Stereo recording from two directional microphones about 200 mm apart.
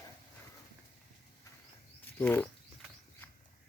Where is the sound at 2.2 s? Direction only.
10° left (ahead or behind).